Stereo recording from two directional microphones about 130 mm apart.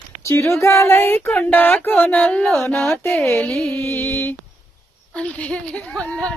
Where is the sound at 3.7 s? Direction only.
15° left (ahead or behind).